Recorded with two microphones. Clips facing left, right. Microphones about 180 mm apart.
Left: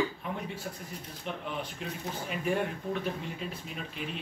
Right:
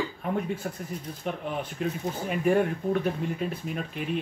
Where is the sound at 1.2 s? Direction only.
50° right (ahead or behind).